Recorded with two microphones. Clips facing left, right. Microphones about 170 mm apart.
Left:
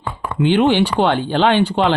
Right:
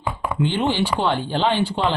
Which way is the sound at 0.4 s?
70° left (ahead or behind).